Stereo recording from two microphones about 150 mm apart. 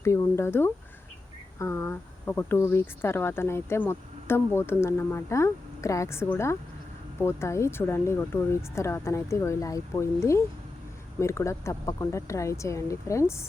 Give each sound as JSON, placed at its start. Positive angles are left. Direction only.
{"t": 0.0, "sound": "speech", "side_deg": 20}